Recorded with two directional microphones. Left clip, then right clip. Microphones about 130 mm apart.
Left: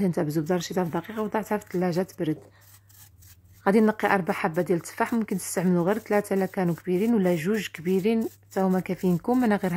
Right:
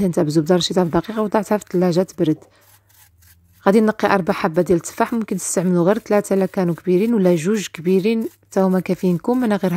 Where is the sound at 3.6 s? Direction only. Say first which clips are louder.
Right 6 dB; 35° right (ahead or behind).